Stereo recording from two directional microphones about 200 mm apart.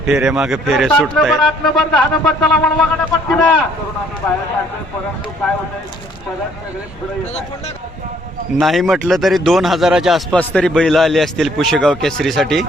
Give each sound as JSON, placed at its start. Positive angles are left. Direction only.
{"t": 0.0, "sound": "speech", "side_deg": -5}
{"t": 8.5, "sound": "speech", "side_deg": 0}